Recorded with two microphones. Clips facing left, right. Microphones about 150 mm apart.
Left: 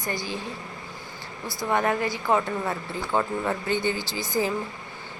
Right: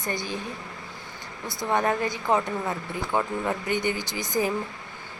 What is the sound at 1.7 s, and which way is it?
Speech, 20° right (ahead or behind).